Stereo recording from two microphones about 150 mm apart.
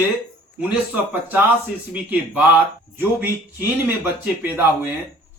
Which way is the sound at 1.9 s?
10° right (ahead or behind).